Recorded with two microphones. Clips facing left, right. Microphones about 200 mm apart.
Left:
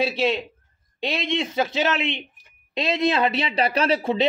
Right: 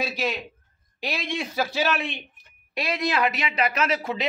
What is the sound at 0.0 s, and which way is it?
A man's voice, 30° left (ahead or behind).